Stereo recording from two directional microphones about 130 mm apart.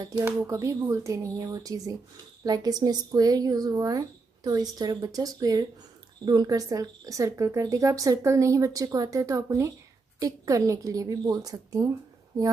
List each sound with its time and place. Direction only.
0.5 s speech: 25° right (ahead or behind)